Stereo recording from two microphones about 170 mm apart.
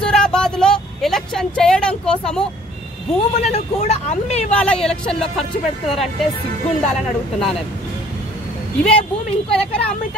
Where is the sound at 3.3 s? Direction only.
35° left (ahead or behind).